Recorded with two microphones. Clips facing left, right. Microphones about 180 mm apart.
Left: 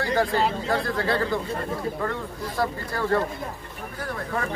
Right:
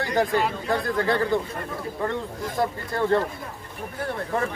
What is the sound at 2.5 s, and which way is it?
Speech, 20° right (ahead or behind).